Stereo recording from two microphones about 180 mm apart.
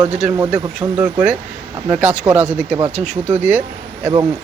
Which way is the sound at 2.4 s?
5° right (ahead or behind).